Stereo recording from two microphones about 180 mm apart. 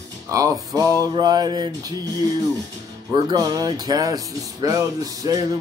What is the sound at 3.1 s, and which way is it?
Speech, 25° right (ahead or behind).